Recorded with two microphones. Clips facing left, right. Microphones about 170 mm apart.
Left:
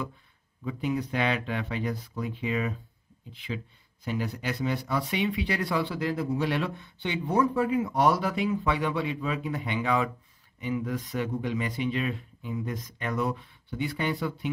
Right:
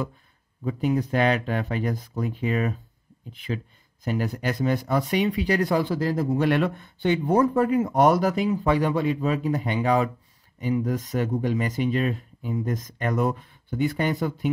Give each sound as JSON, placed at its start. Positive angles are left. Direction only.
{"t": 0.7, "sound": "speech", "side_deg": -45}